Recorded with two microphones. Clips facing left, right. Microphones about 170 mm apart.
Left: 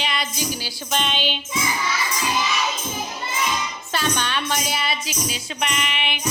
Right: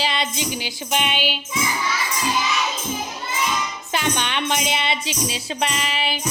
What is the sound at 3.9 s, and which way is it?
Music, 20° right (ahead or behind).